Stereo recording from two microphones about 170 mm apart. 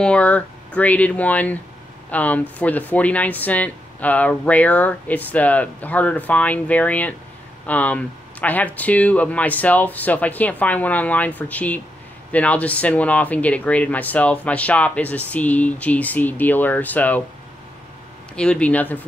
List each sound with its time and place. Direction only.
0.0 s speech: 5° left (ahead or behind)
18.3 s speech: 5° left (ahead or behind)